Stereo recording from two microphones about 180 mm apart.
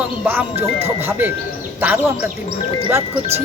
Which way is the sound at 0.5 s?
35° right (ahead or behind).